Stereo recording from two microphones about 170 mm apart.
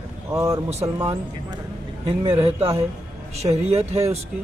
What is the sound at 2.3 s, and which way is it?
Speech, 15° right (ahead or behind).